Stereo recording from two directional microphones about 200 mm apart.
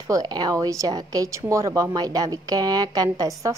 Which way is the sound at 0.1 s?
20° right (ahead or behind).